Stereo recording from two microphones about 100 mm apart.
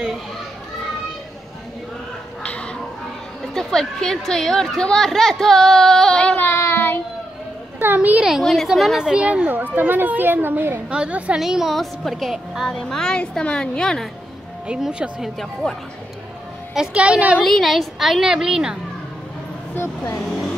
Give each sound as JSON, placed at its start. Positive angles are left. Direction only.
{"t": 2.4, "sound": "a sound", "side_deg": 10}
{"t": 3.5, "sound": "speech", "side_deg": 5}
{"t": 7.8, "sound": "speech", "side_deg": -15}
{"t": 8.3, "sound": "speech", "side_deg": 0}
{"t": 14.7, "sound": "speech", "side_deg": -10}
{"t": 16.7, "sound": "speech", "side_deg": -10}
{"t": 17.4, "sound": "speech", "side_deg": 0}
{"t": 19.7, "sound": "speech", "side_deg": 25}